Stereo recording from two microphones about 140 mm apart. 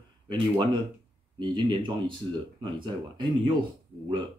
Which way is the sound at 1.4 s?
35° right (ahead or behind).